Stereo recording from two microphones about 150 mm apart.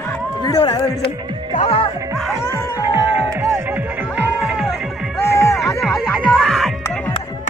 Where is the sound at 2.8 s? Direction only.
15° right (ahead or behind).